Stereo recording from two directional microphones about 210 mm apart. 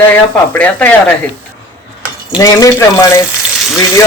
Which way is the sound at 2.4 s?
15° left (ahead or behind).